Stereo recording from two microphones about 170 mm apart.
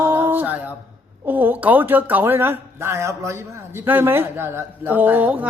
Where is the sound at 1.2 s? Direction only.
10° right (ahead or behind).